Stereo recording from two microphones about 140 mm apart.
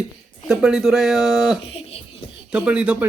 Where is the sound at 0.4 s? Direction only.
5° right (ahead or behind).